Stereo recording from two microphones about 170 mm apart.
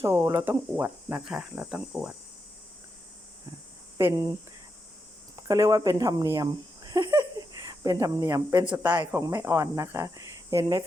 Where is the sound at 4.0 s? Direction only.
15° right (ahead or behind).